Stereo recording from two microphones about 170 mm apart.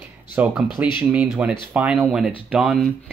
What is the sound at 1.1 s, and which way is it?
Speech, 10° right (ahead or behind).